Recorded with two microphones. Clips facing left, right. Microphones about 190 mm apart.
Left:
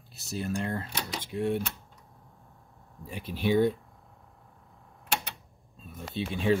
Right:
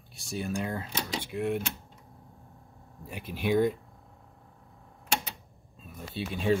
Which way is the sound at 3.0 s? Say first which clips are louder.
Left 1 dB; 10° right (ahead or behind).